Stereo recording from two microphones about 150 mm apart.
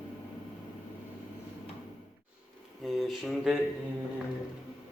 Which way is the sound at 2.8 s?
Centre (ahead or behind).